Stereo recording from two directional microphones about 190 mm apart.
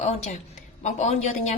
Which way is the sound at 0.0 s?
35° left (ahead or behind).